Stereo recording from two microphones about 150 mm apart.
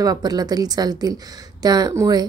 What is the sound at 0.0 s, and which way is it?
A woman's voice, 25° right (ahead or behind).